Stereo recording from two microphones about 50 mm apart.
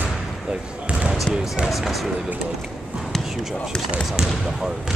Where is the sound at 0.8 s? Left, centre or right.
Right.